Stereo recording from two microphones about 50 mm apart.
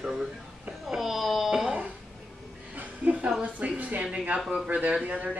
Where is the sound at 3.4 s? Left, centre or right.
Right.